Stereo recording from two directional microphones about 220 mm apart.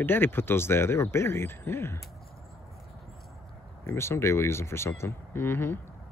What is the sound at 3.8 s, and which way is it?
Speech, 10° left (ahead or behind).